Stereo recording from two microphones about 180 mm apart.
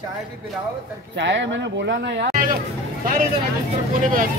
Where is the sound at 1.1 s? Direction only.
80° right.